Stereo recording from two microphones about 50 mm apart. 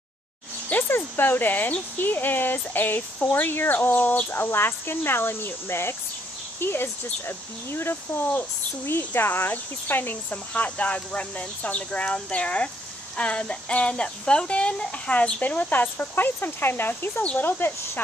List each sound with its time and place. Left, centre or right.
0.8 s speech: left
4.3 s speech: left
10.3 s speech: left
15.4 s speech: left